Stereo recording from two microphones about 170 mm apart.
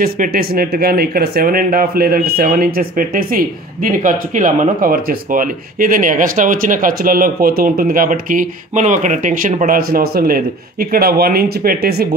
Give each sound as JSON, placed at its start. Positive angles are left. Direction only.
{"t": 0.0, "sound": "speech", "side_deg": -65}